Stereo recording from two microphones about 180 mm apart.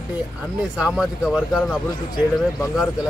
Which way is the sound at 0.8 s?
5° right (ahead or behind).